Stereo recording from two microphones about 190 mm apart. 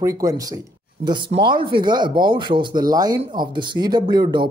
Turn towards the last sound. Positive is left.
turn(degrees=-20)  # may be behind; listen again after turning